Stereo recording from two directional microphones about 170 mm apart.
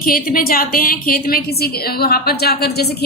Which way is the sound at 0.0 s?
55° left (ahead or behind).